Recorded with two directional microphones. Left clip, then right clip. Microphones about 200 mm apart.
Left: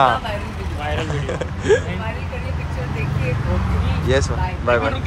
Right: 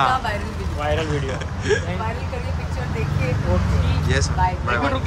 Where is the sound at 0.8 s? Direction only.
50° right (ahead or behind).